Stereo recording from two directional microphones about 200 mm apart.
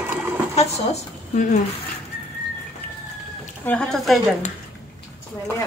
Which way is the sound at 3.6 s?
5° left (ahead or behind).